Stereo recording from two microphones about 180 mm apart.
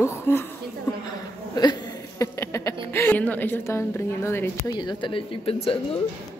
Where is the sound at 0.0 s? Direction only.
15° left (ahead or behind).